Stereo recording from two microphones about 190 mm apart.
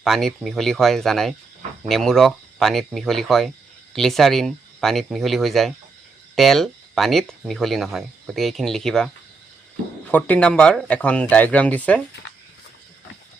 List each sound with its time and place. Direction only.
0.0 s speech: centre (ahead or behind)
10.1 s speech: 10° left (ahead or behind)